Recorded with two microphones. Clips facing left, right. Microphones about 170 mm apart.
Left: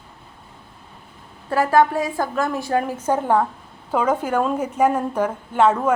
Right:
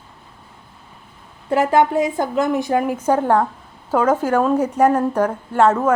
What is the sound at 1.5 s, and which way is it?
A woman's voice, 20° right (ahead or behind).